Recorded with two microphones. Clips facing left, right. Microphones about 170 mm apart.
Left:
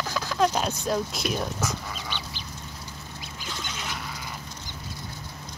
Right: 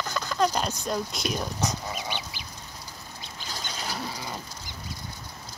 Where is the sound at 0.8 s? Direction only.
5° left (ahead or behind).